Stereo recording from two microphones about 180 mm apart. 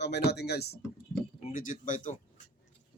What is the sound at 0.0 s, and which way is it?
Speech, 70° left (ahead or behind).